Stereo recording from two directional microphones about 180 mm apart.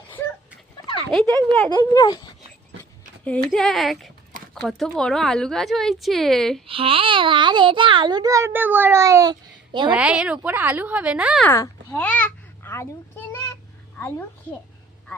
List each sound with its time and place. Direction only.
1.1 s a woman's voice: centre (ahead or behind)
1.8 s speech: 20° left (ahead or behind)
3.2 s a woman's voice: 5° left (ahead or behind)
6.7 s a child's voice: 30° right (ahead or behind)
9.9 s speech: 5° right (ahead or behind)
11.4 s babbling: 15° left (ahead or behind)